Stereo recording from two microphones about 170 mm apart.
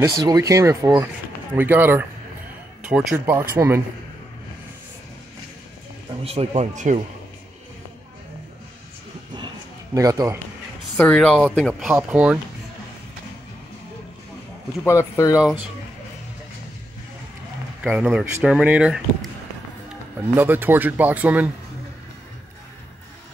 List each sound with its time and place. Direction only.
0.0 s speech: 20° right (ahead or behind); by 3.3 s 5° right (ahead or behind)
3.3 s speech: 15° right (ahead or behind)
6.2 s speech: 40° right (ahead or behind)
9.9 s speech: 20° right (ahead or behind)
11.0 s speech: 5° left (ahead or behind)
14.9 s speech: 15° left (ahead or behind)
15.3 s speech: 5° right (ahead or behind)
17.8 s speech: 5° right (ahead or behind)
20.3 s speech: 10° right (ahead or behind)